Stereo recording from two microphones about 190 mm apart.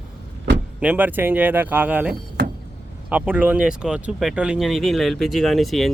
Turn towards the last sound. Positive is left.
turn(degrees=0)  # may be behind; listen again after turning